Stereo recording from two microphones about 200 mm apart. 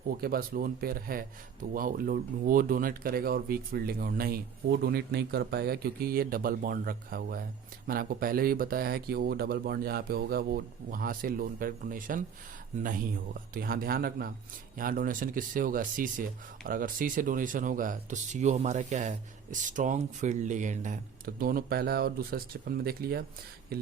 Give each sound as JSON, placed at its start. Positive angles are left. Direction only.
{"t": 0.1, "sound": "speech", "side_deg": -45}
{"t": 13.5, "sound": "speech", "side_deg": -45}